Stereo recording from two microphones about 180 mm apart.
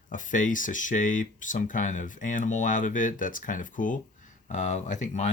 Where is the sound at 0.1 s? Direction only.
45° left (ahead or behind).